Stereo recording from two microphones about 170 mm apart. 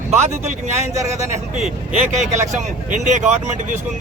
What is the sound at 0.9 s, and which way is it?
Speech, 20° right (ahead or behind).